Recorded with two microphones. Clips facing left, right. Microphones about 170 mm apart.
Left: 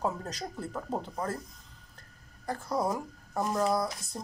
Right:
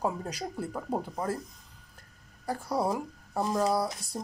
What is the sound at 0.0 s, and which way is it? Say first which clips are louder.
Speech: right 1 dB; 10° right (ahead or behind).